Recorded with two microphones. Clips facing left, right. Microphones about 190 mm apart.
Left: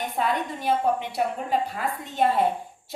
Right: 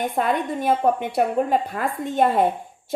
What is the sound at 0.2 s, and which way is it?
A woman's voice, 50° right (ahead or behind).